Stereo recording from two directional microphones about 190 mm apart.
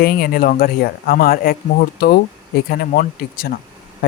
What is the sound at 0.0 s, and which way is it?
Speech, 50° left (ahead or behind).